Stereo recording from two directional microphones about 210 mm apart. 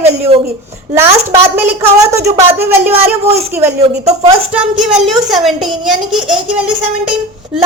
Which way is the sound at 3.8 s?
30° right (ahead or behind).